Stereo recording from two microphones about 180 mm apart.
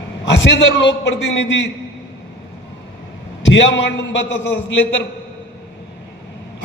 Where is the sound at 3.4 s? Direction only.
90° left.